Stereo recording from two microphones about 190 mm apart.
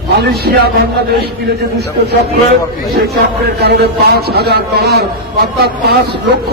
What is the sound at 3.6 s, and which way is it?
Speech, 60° right (ahead or behind).